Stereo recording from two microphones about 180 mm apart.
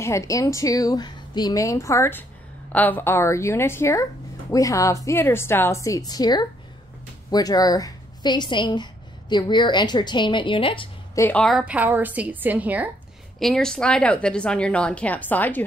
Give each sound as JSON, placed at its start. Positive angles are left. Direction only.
{"t": 0.0, "sound": "a woman's voice", "side_deg": 15}
{"t": 11.1, "sound": "a woman's voice", "side_deg": 10}
{"t": 13.4, "sound": "a woman's voice", "side_deg": 0}